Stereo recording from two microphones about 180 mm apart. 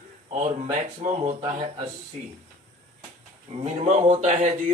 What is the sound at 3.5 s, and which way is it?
Speech, 35° right (ahead or behind).